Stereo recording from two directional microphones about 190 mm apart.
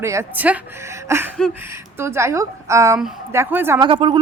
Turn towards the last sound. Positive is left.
turn(degrees=-25)  # may be behind; listen again after turning